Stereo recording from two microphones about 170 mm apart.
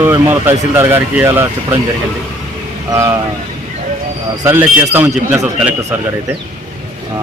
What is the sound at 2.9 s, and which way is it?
Speech, 20° right (ahead or behind).